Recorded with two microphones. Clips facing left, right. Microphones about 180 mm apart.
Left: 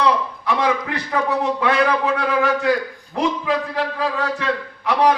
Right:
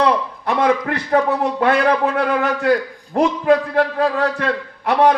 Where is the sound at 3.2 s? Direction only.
50° right (ahead or behind).